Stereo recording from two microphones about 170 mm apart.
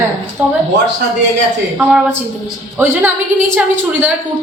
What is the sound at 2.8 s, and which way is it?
A woman's voice, 10° right (ahead or behind).